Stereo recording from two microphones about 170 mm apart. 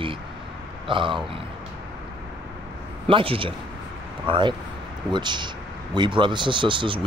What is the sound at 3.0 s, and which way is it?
Speech, 30° right (ahead or behind).